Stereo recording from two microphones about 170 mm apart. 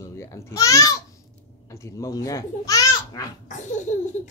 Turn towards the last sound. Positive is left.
turn(degrees=45)  # may be behind; listen again after turning